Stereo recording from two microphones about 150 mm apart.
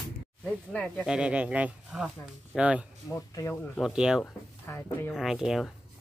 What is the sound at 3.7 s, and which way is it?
Speech, 5° right (ahead or behind).